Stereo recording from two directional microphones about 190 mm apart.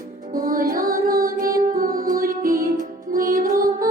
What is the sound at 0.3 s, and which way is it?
Music, 45° right (ahead or behind).